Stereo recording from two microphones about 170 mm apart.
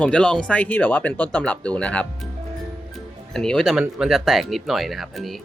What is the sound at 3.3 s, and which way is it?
Speech, 5° left (ahead or behind).